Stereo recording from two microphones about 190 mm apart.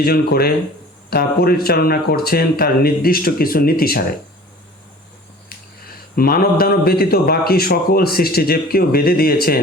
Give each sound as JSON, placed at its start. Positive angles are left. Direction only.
{"t": 0.0, "sound": "a man's voice", "side_deg": 55}
{"t": 6.1, "sound": "a man's voice", "side_deg": 50}